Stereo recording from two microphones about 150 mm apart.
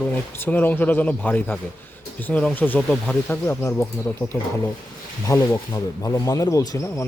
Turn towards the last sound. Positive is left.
turn(degrees=25)  # may be behind; listen again after turning